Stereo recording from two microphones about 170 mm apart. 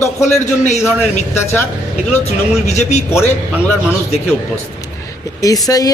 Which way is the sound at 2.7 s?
40° left (ahead or behind).